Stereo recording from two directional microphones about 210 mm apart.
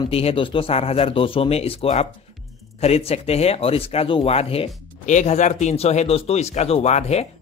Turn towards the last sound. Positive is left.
turn(degrees=30)  # may be behind; listen again after turning